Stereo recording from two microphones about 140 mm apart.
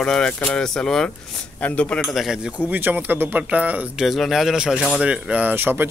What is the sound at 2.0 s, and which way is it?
Speech, centre (ahead or behind).